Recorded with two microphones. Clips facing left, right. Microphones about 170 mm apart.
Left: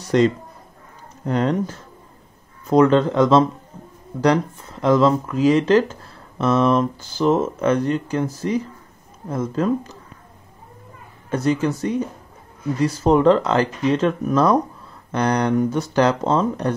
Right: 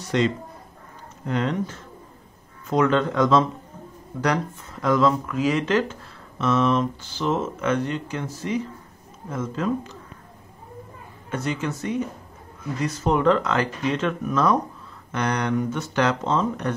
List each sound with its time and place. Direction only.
0.1 s speech: 40° left (ahead or behind)
4.8 s speech: 30° left (ahead or behind)
11.2 s speech: 35° left (ahead or behind)